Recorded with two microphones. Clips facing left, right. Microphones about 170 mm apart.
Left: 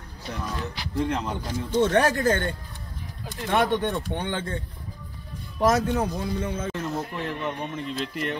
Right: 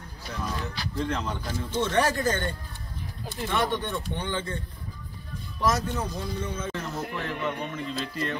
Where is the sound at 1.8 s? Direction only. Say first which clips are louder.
Left 4 dB; 55° left (ahead or behind).